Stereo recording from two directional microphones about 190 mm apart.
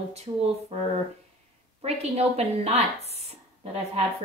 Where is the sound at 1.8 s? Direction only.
35° right (ahead or behind).